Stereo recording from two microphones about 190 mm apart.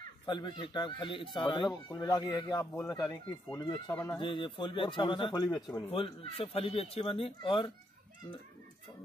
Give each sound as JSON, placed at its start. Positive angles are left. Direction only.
{"t": 0.3, "sound": "speech", "side_deg": 25}
{"t": 2.6, "sound": "speech", "side_deg": 10}
{"t": 2.9, "sound": "speech", "side_deg": 20}
{"t": 4.2, "sound": "speech", "side_deg": 25}